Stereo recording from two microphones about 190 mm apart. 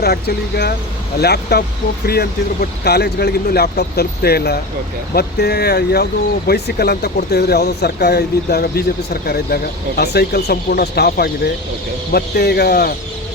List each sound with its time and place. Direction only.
0.0 s speech: 55° left (ahead or behind)